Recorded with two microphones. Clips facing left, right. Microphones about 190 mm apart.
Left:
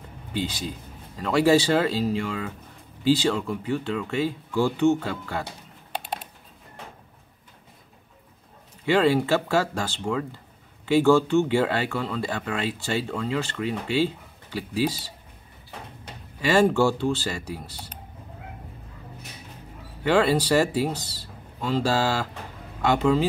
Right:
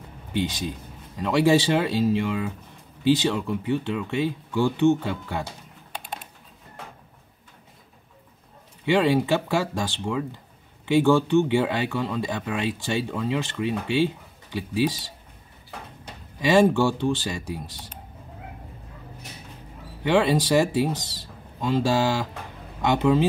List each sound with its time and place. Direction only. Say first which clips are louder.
0.3 s speech: right 2 dB; 20° right (ahead or behind)
8.8 s speech: even; 15° right (ahead or behind)
16.3 s speech: right 1 dB; 15° right (ahead or behind)
20.0 s speech: even; 15° right (ahead or behind)